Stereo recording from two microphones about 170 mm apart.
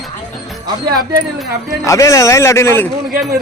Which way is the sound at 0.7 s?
25° right (ahead or behind).